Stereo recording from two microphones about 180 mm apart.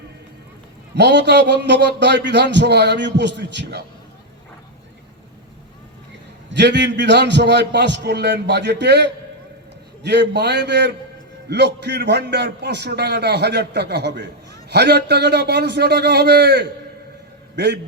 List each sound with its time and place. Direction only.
0.9 s a man's voice: 70° right (ahead or behind)
6.5 s a man's voice: 75° right (ahead or behind)